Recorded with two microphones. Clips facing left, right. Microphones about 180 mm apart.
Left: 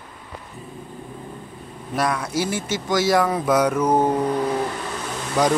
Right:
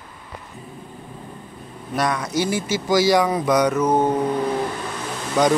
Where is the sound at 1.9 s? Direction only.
5° left (ahead or behind).